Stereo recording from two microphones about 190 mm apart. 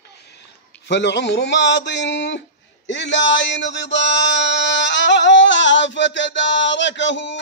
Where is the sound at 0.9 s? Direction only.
65° left (ahead or behind).